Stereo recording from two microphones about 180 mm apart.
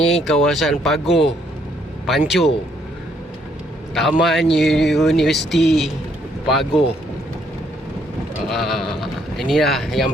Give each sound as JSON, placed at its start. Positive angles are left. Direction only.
{"t": 0.0, "sound": "speech", "side_deg": 0}
{"t": 4.2, "sound": "speech", "side_deg": 0}
{"t": 8.4, "sound": "speech", "side_deg": 0}